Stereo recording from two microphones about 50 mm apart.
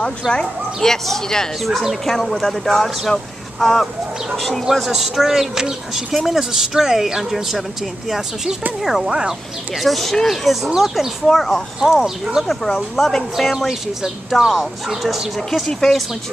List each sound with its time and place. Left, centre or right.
0.2 s speech: centre
0.7 s speech: centre
8.8 s speech: centre
11.2 s speech: centre